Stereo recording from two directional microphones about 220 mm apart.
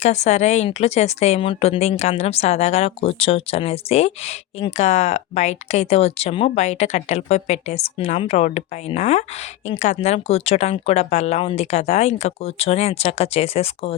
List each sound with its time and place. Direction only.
0.0 s speech: 30° left (ahead or behind)